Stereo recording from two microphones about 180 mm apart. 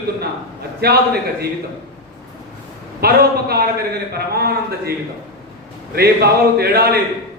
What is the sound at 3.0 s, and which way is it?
A man's voice, 60° right (ahead or behind).